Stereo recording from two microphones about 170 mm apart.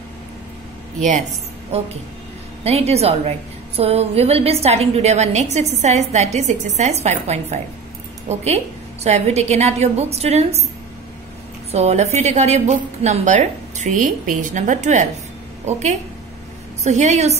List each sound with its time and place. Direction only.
2.6 s a woman's voice: 40° right (ahead or behind)
11.7 s a woman's voice: 40° right (ahead or behind)